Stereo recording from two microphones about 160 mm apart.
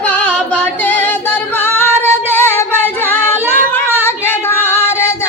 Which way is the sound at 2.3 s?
15° left (ahead or behind).